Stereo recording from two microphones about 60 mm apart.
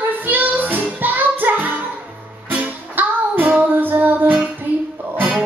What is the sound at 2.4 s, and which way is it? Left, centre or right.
Music, right.